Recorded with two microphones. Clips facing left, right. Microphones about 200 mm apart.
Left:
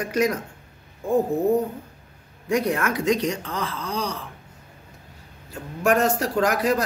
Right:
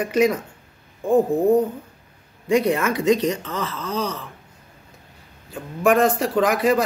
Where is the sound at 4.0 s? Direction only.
15° left (ahead or behind).